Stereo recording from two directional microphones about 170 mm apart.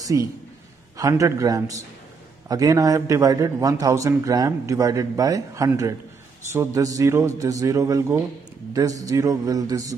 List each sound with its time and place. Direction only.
0.0 s a man's voice: 20° right (ahead or behind)